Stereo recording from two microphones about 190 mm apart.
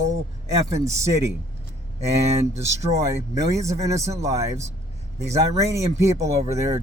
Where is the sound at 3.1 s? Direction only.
15° right (ahead or behind).